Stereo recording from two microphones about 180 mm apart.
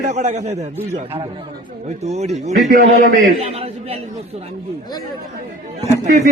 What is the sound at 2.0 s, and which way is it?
Speech, 35° right (ahead or behind).